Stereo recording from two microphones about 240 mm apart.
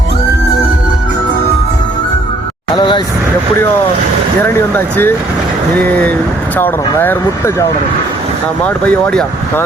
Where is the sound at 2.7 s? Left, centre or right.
Centre.